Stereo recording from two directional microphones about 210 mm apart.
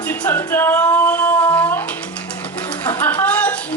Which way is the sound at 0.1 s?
10° left (ahead or behind).